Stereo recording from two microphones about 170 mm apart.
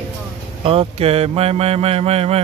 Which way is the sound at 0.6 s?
35° right (ahead or behind).